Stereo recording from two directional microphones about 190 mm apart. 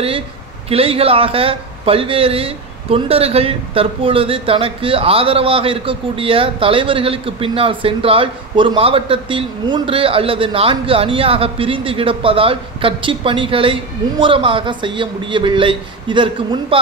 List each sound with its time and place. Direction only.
0.7 s a man's voice: 30° right (ahead or behind)